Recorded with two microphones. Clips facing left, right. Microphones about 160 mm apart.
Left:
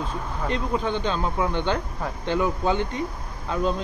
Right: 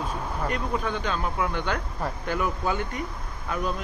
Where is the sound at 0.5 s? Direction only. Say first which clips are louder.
Left 4 dB; 25° left (ahead or behind).